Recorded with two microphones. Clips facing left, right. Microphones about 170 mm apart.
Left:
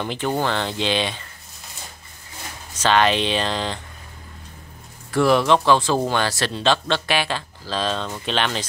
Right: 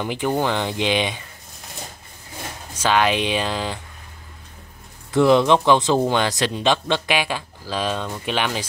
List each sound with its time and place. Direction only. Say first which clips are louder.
0.0 s speech: right 1 dB; 10° right (ahead or behind)
2.7 s speech: left 1 dB; 10° right (ahead or behind)
5.1 s speech: right 2 dB; 20° right (ahead or behind)